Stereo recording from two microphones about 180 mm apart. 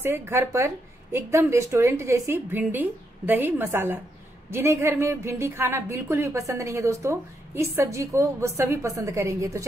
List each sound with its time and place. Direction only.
0.0 s a woman's voice: 15° right (ahead or behind)